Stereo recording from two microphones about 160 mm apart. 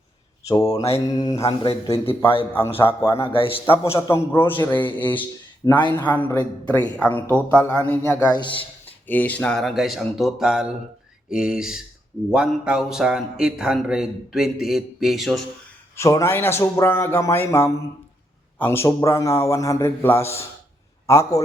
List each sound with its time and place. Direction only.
0.4 s a man's voice: 20° left (ahead or behind)
2.5 s a man's voice: 15° left (ahead or behind)
3.2 s a man's voice: 35° left (ahead or behind)
3.9 s a man's voice: 20° left (ahead or behind)
8.4 s a man's voice: 30° left (ahead or behind)
9.0 s speech: 10° left (ahead or behind)
16.0 s a man's voice: 20° left (ahead or behind)